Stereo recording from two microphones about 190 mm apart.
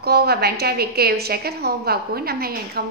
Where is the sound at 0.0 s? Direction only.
55° right (ahead or behind).